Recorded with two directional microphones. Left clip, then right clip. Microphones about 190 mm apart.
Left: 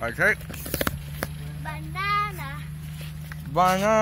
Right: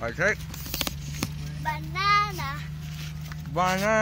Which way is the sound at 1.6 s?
45° right (ahead or behind).